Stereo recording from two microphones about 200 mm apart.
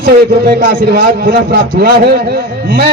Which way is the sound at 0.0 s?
55° right (ahead or behind).